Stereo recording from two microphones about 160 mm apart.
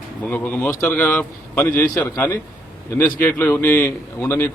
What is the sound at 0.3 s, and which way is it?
A man's voice, 10° left (ahead or behind).